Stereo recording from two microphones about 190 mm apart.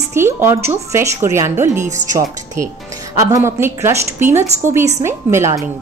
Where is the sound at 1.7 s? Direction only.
40° right (ahead or behind).